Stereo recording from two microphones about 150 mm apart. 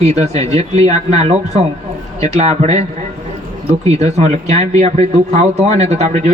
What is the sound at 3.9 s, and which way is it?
Speech, 45° right (ahead or behind).